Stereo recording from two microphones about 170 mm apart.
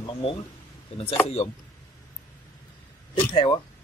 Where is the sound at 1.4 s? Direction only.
35° left (ahead or behind).